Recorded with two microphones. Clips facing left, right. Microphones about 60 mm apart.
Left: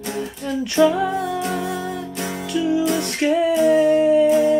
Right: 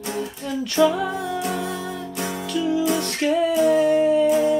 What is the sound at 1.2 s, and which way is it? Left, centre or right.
Music, centre.